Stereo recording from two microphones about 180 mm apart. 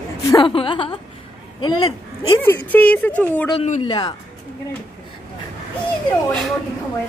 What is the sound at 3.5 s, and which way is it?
Speech, 40° left (ahead or behind).